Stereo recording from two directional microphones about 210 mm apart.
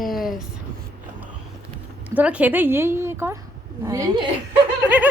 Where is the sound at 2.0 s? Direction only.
5° right (ahead or behind).